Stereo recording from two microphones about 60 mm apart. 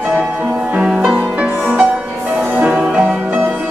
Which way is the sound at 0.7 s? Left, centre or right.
Centre.